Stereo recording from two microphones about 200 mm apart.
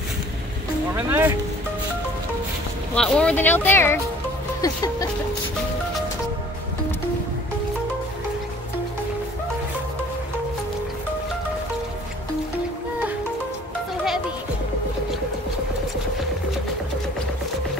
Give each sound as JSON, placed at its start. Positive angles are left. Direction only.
{"t": 0.9, "sound": "speech", "side_deg": -10}
{"t": 2.9, "sound": "speech", "side_deg": 5}